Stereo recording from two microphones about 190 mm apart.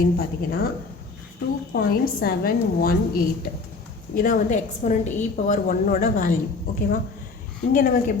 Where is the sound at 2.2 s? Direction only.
50° left (ahead or behind).